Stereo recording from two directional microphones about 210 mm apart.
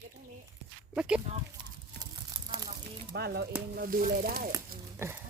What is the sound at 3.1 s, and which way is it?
Speech, 50° right (ahead or behind).